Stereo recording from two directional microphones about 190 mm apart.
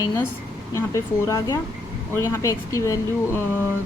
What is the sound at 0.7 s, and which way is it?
Speech, 15° left (ahead or behind).